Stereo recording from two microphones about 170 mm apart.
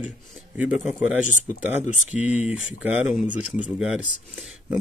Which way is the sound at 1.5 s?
45° left (ahead or behind).